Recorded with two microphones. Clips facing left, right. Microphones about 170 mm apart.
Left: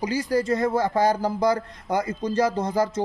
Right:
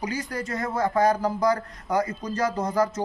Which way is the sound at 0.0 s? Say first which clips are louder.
Left 7 dB; 30° left (ahead or behind).